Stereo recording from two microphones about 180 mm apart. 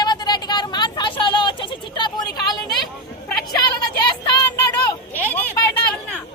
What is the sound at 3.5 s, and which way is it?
Child singing, 25° left (ahead or behind).